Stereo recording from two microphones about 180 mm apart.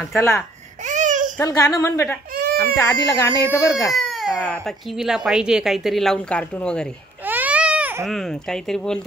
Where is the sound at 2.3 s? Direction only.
55° right (ahead or behind).